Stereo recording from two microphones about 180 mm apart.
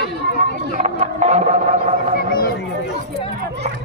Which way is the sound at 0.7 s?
40° right (ahead or behind).